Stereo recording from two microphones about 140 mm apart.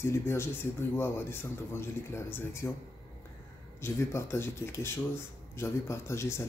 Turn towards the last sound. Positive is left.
turn(degrees=20)  # may be behind; listen again after turning